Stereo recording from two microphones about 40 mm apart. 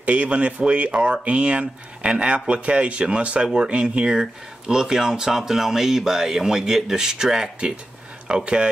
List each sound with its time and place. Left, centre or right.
0.0 s speech: right